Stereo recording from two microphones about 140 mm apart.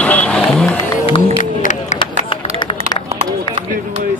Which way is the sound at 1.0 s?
40° left (ahead or behind).